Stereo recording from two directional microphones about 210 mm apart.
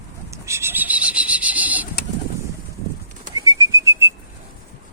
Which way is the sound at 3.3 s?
15° right (ahead or behind).